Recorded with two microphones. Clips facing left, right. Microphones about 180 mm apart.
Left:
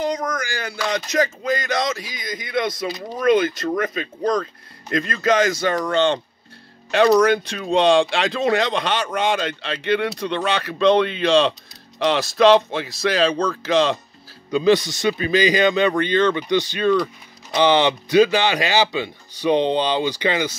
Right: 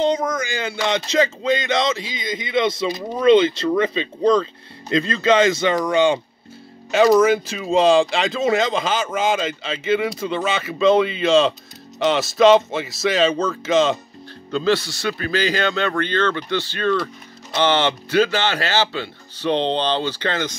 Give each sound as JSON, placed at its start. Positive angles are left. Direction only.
{"t": 0.0, "sound": "a sound", "side_deg": -25}
{"t": 6.9, "sound": "speech", "side_deg": -5}
{"t": 14.5, "sound": "speech", "side_deg": 15}